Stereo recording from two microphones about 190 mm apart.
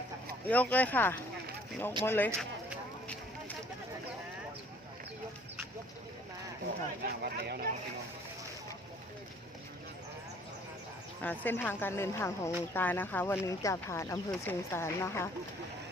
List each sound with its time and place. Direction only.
0.4 s speech: 10° left (ahead or behind)
7.0 s speech: 55° right (ahead or behind)
11.2 s speech: 10° left (ahead or behind)